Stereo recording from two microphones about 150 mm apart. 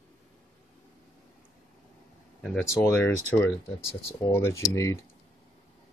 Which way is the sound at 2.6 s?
20° left (ahead or behind).